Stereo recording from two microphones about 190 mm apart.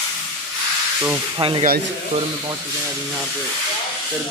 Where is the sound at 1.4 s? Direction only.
30° right (ahead or behind).